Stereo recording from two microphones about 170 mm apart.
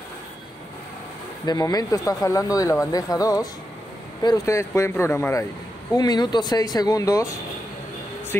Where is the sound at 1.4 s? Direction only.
20° left (ahead or behind).